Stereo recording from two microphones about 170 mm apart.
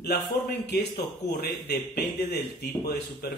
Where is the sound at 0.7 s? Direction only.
75° left (ahead or behind).